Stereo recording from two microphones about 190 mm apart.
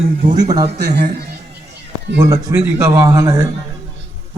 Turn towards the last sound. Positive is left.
turn(degrees=-15)  # may be behind; listen again after turning